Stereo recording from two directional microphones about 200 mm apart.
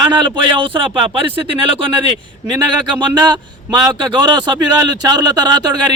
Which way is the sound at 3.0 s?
20° right (ahead or behind).